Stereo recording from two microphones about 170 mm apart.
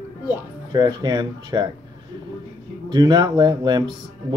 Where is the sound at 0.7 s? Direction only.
25° right (ahead or behind).